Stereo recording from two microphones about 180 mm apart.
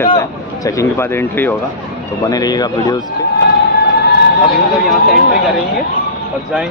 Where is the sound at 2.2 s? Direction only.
20° left (ahead or behind).